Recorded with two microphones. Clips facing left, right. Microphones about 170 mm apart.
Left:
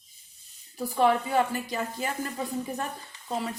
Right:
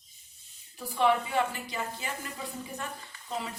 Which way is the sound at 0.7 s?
40° left (ahead or behind).